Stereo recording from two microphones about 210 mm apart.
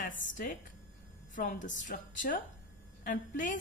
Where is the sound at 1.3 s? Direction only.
40° left (ahead or behind).